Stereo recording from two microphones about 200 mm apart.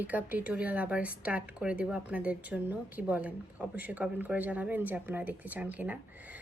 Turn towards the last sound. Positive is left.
turn(degrees=-10)  # may be behind; listen again after turning